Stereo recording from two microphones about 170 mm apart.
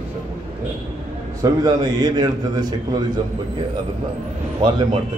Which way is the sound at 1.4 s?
20° right (ahead or behind).